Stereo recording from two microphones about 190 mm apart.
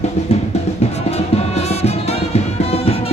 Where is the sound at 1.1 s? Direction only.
35° left (ahead or behind).